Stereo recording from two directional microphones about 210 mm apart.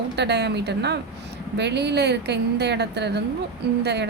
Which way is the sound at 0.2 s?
55° right (ahead or behind).